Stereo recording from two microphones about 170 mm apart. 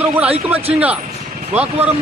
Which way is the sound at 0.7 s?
5° right (ahead or behind).